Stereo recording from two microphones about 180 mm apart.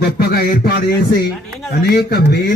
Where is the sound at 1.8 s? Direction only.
60° left (ahead or behind).